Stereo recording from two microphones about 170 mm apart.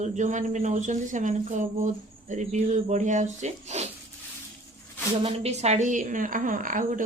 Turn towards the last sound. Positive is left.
turn(degrees=-50)  # may be behind; listen again after turning